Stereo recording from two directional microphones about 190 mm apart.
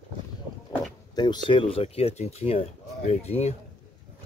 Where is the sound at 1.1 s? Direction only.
20° left (ahead or behind).